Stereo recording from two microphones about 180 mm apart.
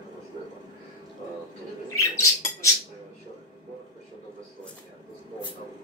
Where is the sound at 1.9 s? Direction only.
15° left (ahead or behind).